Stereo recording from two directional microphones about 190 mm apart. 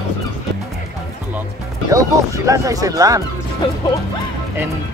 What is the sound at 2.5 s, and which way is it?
Speech, 20° right (ahead or behind).